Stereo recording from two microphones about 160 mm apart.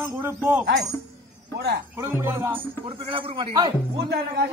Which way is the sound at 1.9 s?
15° right (ahead or behind).